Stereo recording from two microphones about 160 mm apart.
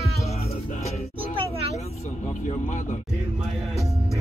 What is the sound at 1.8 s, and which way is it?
Vehicle, 40° left (ahead or behind).